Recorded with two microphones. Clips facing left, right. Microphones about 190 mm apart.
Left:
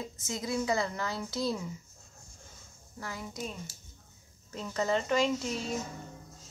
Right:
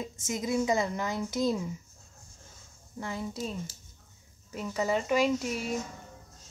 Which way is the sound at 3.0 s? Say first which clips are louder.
Right 5 dB; 25° right (ahead or behind).